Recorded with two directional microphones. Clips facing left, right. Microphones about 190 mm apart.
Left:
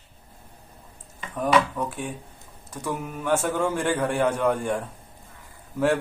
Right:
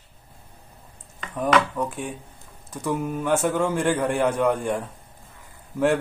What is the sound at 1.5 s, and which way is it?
Speech, 5° left (ahead or behind).